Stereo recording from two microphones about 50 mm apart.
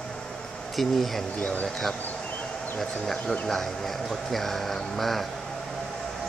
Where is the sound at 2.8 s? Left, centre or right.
Centre.